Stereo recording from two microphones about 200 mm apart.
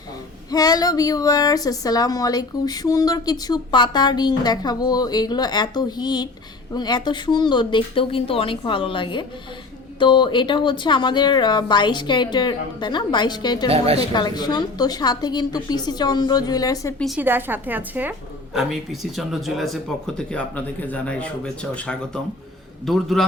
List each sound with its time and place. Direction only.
0.5 s a woman's voice: 20° left (ahead or behind)
13.7 s a woman's voice: 30° right (ahead or behind)
14.0 s a woman's voice: 20° left (ahead or behind)
17.0 s a woman's voice: 5° right (ahead or behind)